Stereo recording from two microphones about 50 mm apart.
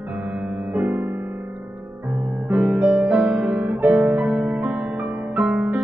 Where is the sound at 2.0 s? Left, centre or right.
Right.